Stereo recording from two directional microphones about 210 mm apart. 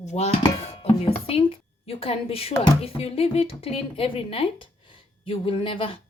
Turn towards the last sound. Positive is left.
turn(degrees=25)  # may be behind; listen again after turning